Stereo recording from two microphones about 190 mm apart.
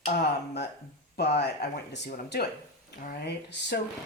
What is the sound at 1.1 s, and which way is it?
Speech, 60° left (ahead or behind).